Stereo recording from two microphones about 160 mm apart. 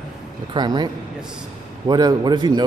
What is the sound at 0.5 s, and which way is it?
A man's voice, 25° right (ahead or behind).